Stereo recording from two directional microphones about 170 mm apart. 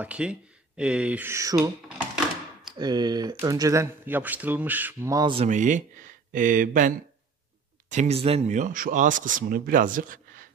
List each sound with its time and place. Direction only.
0.0 s speech: 5° right (ahead or behind)
2.7 s speech: 25° right (ahead or behind)
5.3 s speech: 40° right (ahead or behind)
7.9 s speech: 40° right (ahead or behind)